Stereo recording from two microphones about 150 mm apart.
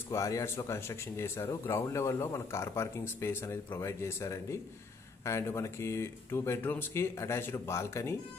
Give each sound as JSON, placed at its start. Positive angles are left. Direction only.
{"t": 0.1, "sound": "speech", "side_deg": 20}